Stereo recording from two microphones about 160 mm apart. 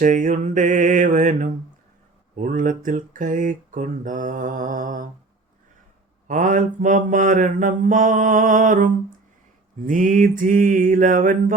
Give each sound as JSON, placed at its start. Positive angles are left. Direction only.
{"t": 0.0, "sound": "mantra", "side_deg": -50}
{"t": 2.3, "sound": "speech", "side_deg": -55}
{"t": 6.2, "sound": "speech", "side_deg": -55}